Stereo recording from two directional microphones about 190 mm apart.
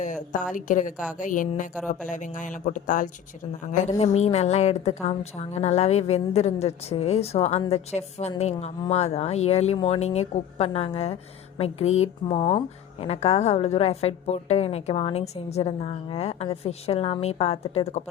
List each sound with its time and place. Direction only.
0.0 s a woman's voice: 40° left (ahead or behind)